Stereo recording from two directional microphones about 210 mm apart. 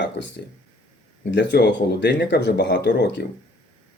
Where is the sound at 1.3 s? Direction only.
55° left (ahead or behind).